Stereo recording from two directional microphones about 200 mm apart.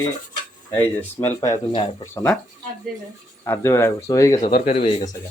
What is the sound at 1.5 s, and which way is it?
Speech, 30° left (ahead or behind).